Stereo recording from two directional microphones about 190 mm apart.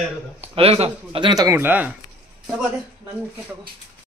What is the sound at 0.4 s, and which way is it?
Speech, 30° right (ahead or behind).